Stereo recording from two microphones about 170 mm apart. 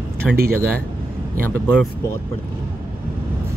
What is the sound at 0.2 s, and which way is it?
Speech, centre (ahead or behind).